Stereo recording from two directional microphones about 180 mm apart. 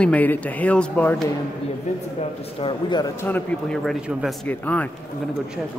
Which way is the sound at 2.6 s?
25° left (ahead or behind).